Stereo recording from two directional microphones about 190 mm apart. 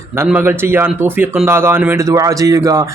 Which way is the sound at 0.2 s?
10° right (ahead or behind).